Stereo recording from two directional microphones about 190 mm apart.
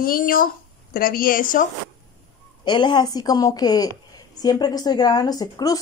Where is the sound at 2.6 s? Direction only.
25° left (ahead or behind).